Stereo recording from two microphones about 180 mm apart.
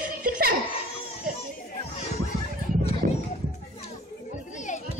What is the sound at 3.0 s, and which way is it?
Children playing, 55° right (ahead or behind).